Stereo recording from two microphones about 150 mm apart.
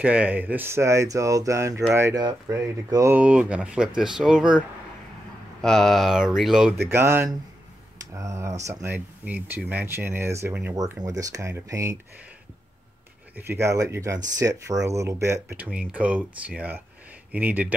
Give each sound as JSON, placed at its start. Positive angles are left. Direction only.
{"t": 0.0, "sound": "speech", "side_deg": -10}
{"t": 3.2, "sound": "speech", "side_deg": -10}
{"t": 6.8, "sound": "speech", "side_deg": -15}
{"t": 13.4, "sound": "speech", "side_deg": -15}
{"t": 15.5, "sound": "speech", "side_deg": -5}